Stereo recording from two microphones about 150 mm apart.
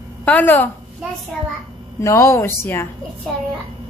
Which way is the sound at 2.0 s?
20° left (ahead or behind).